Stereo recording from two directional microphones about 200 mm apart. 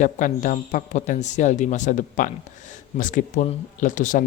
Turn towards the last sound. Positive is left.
turn(degrees=40)  # may be behind; listen again after turning